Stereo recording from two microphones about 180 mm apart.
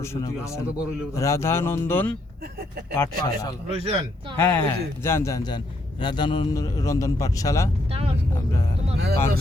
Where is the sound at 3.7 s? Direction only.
30° right (ahead or behind).